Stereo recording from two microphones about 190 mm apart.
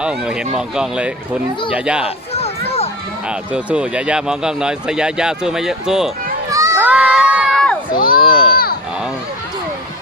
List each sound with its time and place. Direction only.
0.0 s speech: 5° right (ahead or behind)
2.3 s children playing: 30° left (ahead or behind)
3.2 s speech: 5° right (ahead or behind)
6.5 s crowd: 15° right (ahead or behind)
7.9 s a sound: 50° left (ahead or behind)